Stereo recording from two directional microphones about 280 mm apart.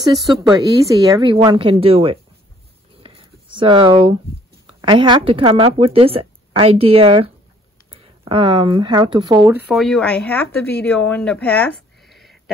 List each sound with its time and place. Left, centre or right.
0.4 s speech: centre
3.0 s a sound: centre
4.8 s a woman's voice: centre
9.7 s a woman's voice: centre